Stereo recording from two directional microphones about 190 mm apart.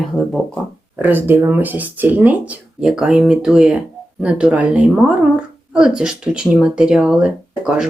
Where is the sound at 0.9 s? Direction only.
10° right (ahead or behind).